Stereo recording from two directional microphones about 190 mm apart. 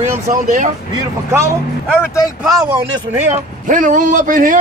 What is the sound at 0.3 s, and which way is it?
Speech, 40° right (ahead or behind).